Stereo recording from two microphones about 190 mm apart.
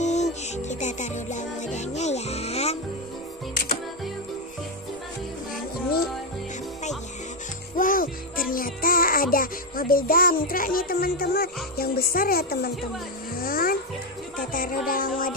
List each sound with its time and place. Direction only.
0.0 s music: 35° left (ahead or behind)
7.7 s music: 45° left (ahead or behind)